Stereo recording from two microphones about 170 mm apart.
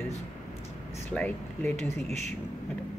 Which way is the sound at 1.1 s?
10° left (ahead or behind).